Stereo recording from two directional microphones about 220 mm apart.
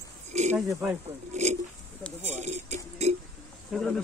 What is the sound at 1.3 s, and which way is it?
Oink, 30° right (ahead or behind).